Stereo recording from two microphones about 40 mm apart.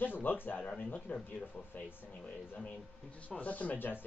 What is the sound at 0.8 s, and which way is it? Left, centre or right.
Speech, left.